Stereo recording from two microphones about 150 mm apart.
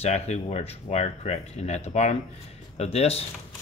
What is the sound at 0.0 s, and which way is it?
Speech, 45° left (ahead or behind).